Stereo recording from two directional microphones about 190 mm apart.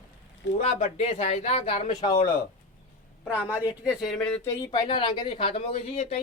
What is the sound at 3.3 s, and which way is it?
A woman's voice, 5° right (ahead or behind).